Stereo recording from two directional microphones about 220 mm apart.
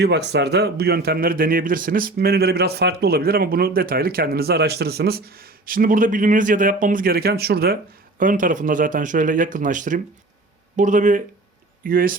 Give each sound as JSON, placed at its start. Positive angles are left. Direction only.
{"t": 0.0, "sound": "speech", "side_deg": -50}